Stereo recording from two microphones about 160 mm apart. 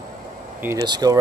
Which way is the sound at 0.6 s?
25° right (ahead or behind).